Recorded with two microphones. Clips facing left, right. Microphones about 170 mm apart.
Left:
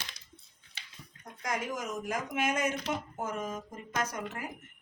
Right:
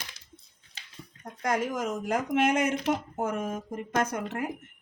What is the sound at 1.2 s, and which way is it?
Speech, 65° right (ahead or behind).